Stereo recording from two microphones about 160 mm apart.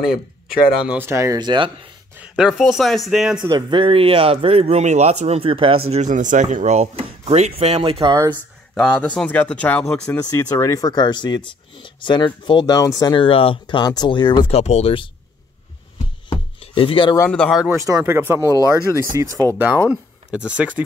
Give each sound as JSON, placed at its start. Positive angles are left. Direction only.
{"t": 0.8, "sound": "speech", "side_deg": -15}
{"t": 2.1, "sound": "speech", "side_deg": -5}
{"t": 3.3, "sound": "speech", "side_deg": -25}
{"t": 5.9, "sound": "speech", "side_deg": -45}
{"t": 8.7, "sound": "speech", "side_deg": 5}
{"t": 10.3, "sound": "speech", "side_deg": 20}
{"t": 16.3, "sound": "chopping", "side_deg": 35}
{"t": 17.3, "sound": "speech", "side_deg": 0}
{"t": 17.6, "sound": "speech", "side_deg": -20}